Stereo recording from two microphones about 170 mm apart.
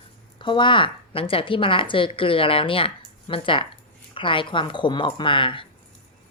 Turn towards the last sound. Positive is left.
turn(degrees=30)  # may be behind; listen again after turning